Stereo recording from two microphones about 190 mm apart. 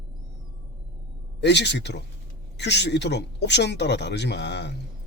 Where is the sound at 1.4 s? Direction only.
65° left (ahead or behind).